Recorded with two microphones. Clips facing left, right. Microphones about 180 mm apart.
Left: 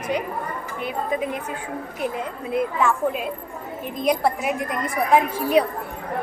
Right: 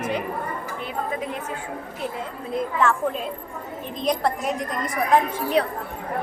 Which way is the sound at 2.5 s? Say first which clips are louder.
Left 1 dB; 10° left (ahead or behind).